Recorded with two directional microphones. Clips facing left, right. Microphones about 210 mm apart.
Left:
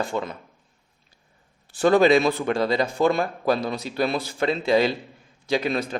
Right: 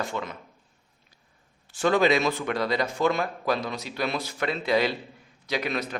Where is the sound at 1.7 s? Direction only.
35° left (ahead or behind).